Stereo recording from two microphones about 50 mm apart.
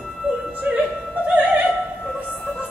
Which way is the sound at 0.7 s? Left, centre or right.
Right.